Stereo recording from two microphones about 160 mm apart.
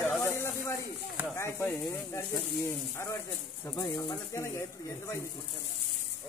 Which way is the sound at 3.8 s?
20° left (ahead or behind).